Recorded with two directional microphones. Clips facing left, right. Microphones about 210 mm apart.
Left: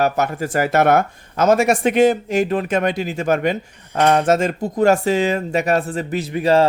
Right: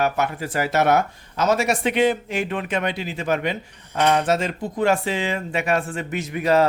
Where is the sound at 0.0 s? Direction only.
45° left (ahead or behind).